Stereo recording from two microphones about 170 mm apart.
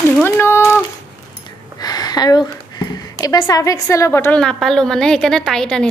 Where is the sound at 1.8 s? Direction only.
20° left (ahead or behind); by 5.9 s 5° left (ahead or behind).